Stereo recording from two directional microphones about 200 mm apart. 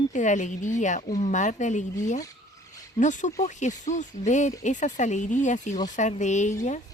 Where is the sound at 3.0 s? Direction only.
40° left (ahead or behind).